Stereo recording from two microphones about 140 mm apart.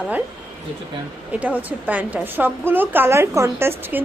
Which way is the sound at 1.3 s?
10° right (ahead or behind).